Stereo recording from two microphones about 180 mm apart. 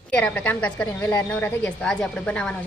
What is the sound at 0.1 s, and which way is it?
A woman's voice, 5° left (ahead or behind).